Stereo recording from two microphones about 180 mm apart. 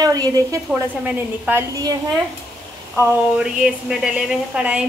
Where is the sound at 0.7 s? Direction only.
5° right (ahead or behind).